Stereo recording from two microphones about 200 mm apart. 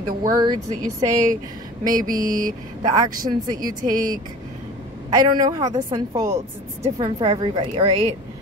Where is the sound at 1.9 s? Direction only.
40° right (ahead or behind).